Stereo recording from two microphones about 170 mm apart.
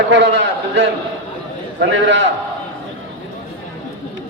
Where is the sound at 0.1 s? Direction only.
90° right.